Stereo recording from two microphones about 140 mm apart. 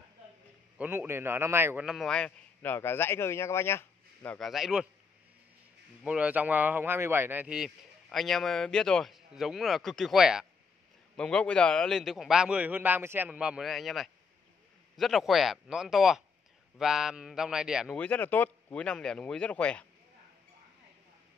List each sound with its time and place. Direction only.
0.7 s a man's voice: 15° right (ahead or behind)
1.9 s a man's voice: centre (ahead or behind)
4.4 s speech: centre (ahead or behind)
6.0 s speech: 10° right (ahead or behind)
17.9 s speech: 10° left (ahead or behind)